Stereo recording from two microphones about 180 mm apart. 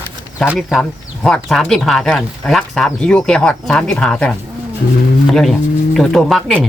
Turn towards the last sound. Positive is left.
turn(degrees=0)  # may be behind; listen again after turning